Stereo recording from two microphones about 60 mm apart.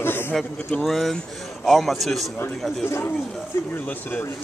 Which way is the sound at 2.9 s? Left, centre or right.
Left.